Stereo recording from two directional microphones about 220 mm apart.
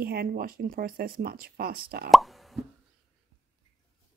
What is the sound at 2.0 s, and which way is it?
Plop, centre (ahead or behind).